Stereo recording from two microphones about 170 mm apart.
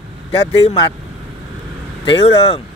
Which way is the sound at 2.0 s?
30° left (ahead or behind).